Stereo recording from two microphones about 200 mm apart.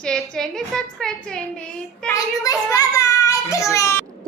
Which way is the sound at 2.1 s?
15° left (ahead or behind).